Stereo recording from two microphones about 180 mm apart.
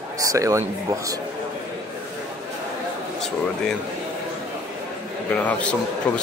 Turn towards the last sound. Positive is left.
turn(degrees=5)  # may be behind; listen again after turning